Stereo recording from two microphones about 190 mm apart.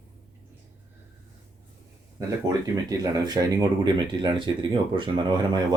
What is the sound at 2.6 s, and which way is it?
Speech, 20° right (ahead or behind).